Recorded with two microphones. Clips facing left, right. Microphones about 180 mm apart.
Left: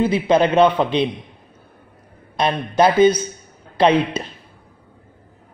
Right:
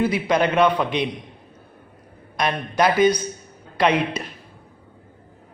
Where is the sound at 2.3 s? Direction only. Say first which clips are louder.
Left 4 dB; 30° left (ahead or behind).